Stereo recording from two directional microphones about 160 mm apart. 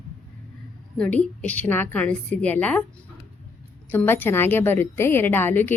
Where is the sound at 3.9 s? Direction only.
15° left (ahead or behind).